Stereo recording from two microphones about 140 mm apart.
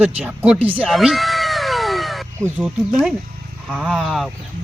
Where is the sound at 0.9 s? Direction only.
Centre (ahead or behind).